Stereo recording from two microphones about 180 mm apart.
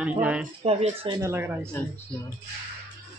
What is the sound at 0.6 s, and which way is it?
Speech, 35° right (ahead or behind).